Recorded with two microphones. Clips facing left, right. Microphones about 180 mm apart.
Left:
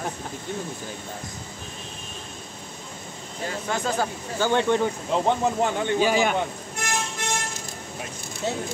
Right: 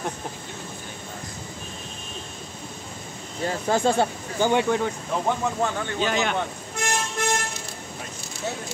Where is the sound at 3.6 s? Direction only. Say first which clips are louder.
Right 6 dB; 30° right (ahead or behind).